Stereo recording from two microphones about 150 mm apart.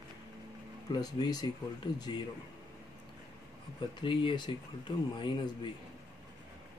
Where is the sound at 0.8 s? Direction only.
25° left (ahead or behind).